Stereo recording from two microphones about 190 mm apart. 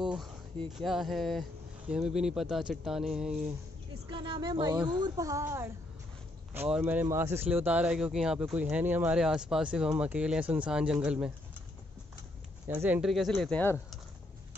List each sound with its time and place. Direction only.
0.0 s speech: centre (ahead or behind)
4.1 s speech: 25° right (ahead or behind)
4.7 s a man's voice: 5° right (ahead or behind)
5.0 s a man's voice: 20° right (ahead or behind)
12.6 s a man's voice: 10° right (ahead or behind); by 13.7 s 5° left (ahead or behind)